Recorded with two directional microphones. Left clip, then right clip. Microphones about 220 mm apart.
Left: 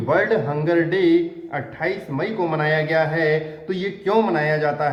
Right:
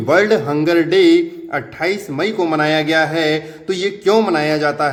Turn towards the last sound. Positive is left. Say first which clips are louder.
# right 4 dB
turn(degrees=-50)  # may be behind; listen again after turning